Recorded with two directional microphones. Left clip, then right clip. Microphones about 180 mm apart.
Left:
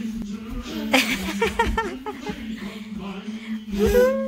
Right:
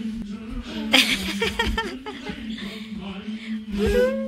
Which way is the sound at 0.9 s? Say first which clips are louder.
Right 2 dB; 15° left (ahead or behind).